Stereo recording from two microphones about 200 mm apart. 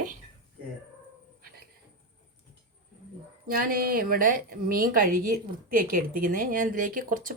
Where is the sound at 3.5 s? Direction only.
45° right (ahead or behind).